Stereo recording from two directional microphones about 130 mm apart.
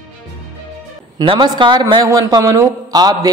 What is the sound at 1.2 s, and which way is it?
A woman's voice, 40° right (ahead or behind).